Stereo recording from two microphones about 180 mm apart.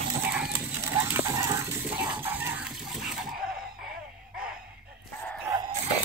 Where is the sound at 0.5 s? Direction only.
10° right (ahead or behind).